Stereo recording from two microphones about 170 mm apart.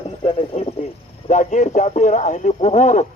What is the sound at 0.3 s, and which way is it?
Speech, 35° left (ahead or behind).